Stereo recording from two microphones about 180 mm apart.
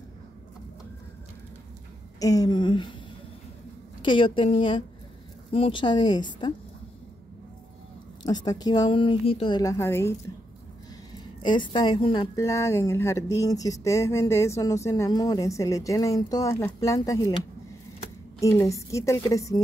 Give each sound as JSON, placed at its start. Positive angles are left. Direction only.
{"t": 2.1, "sound": "a woman's voice", "side_deg": 20}
{"t": 4.0, "sound": "a woman's voice", "side_deg": 30}
{"t": 8.3, "sound": "a woman's voice", "side_deg": 25}
{"t": 11.4, "sound": "a woman's voice", "side_deg": 25}
{"t": 18.4, "sound": "a woman's voice", "side_deg": 15}